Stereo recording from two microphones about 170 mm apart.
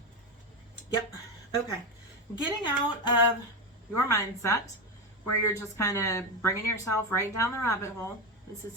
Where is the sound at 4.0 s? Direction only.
15° left (ahead or behind).